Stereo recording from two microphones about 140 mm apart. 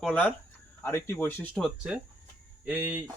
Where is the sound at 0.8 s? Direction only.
15° left (ahead or behind).